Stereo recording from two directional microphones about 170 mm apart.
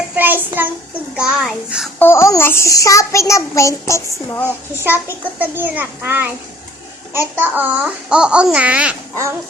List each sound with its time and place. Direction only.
0.2 s child singing: 10° right (ahead or behind)
1.1 s a child's voice: 5° right (ahead or behind)
2.0 s a child's voice: 15° left (ahead or behind)
4.8 s a child's voice: 10° right (ahead or behind)
7.3 s a child's voice: 10° right (ahead or behind)